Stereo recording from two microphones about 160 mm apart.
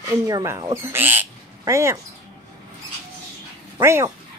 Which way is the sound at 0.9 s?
15° right (ahead or behind).